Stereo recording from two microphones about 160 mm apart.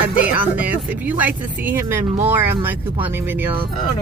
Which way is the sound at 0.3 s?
10° right (ahead or behind).